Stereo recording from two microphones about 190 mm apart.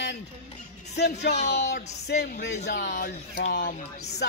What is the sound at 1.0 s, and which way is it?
A man's voice, 60° left (ahead or behind).